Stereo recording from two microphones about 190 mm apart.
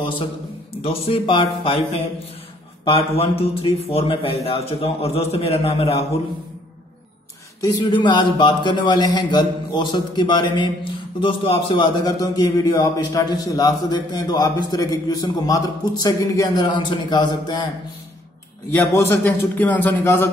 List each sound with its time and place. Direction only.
0.8 s a man's voice: 30° left (ahead or behind)
2.8 s a man's voice: 30° left (ahead or behind)
7.6 s a man's voice: 25° left (ahead or behind)
18.7 s a man's voice: 10° left (ahead or behind)